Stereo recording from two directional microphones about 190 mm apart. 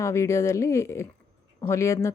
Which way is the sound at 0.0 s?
15° left (ahead or behind).